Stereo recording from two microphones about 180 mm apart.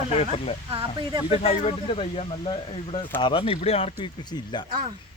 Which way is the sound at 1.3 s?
35° left (ahead or behind).